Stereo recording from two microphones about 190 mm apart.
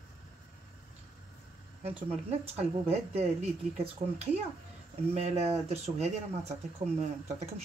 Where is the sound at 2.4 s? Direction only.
35° right (ahead or behind).